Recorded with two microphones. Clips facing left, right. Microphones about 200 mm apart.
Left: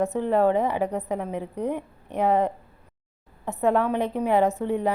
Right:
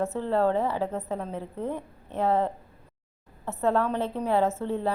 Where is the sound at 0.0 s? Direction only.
15° left (ahead or behind).